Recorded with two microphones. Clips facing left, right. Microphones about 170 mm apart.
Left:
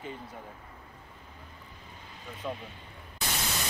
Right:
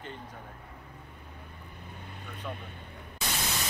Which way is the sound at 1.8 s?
60° right (ahead or behind).